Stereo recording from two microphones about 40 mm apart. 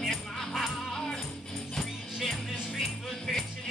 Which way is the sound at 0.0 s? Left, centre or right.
Centre.